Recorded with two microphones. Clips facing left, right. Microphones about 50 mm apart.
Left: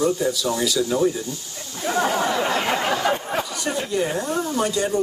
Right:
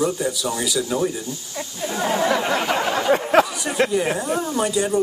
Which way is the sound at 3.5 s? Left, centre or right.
Centre.